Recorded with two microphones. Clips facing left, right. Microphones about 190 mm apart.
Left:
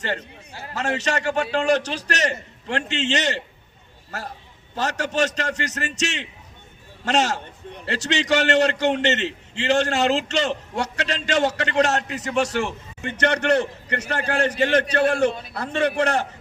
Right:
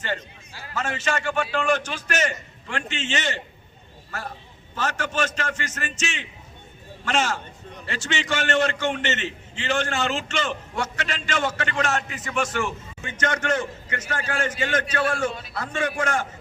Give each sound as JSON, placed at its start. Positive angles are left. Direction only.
{"t": 0.7, "sound": "a man's voice", "side_deg": 40}
{"t": 4.7, "sound": "a man's voice", "side_deg": 40}